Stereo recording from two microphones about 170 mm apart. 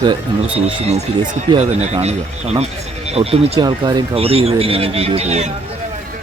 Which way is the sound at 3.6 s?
25° right (ahead or behind).